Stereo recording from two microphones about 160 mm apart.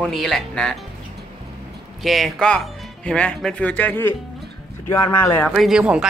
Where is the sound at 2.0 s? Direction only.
Centre (ahead or behind); by 5.5 s 15° left (ahead or behind).